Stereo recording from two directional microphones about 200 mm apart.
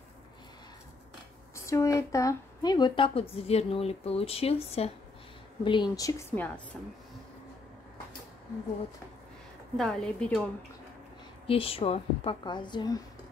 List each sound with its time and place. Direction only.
1.5 s a woman's voice: 15° left (ahead or behind)
9.8 s a woman's voice: centre (ahead or behind)
11.4 s a woman's voice: 25° left (ahead or behind)